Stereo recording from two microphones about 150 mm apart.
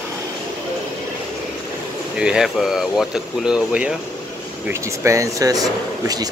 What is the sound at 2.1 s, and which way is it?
Speech, 5° right (ahead or behind).